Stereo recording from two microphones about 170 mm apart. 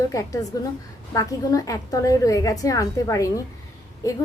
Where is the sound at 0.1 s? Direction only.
20° left (ahead or behind).